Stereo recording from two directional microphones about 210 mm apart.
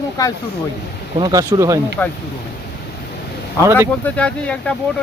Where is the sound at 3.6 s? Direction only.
15° right (ahead or behind).